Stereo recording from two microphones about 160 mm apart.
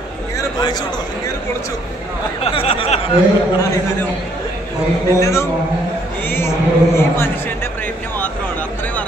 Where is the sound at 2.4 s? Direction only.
35° left (ahead or behind).